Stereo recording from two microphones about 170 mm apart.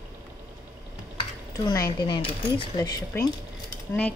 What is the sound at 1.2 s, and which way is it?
Typing, 25° left (ahead or behind).